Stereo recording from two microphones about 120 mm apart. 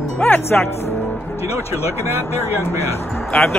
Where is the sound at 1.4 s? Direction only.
60° left (ahead or behind).